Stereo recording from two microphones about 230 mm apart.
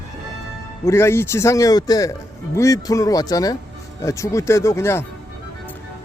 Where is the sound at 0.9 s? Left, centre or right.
Centre.